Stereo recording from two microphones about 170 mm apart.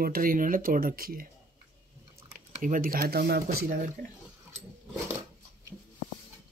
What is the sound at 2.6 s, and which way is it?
Speech, 55° right (ahead or behind).